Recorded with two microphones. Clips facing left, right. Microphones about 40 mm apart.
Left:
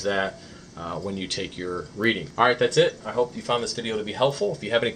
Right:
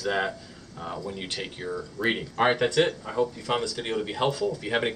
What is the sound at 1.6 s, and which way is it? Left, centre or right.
Speech, centre.